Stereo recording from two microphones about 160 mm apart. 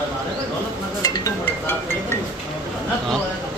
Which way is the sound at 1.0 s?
20° left (ahead or behind).